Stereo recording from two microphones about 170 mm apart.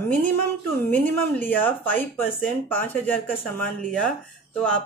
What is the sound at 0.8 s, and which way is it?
Speech, 10° left (ahead or behind).